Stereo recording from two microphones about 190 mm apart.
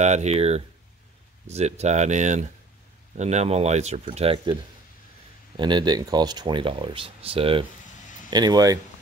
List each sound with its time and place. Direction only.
0.0 s speech: 35° right (ahead or behind)
5.6 s speech: 25° right (ahead or behind)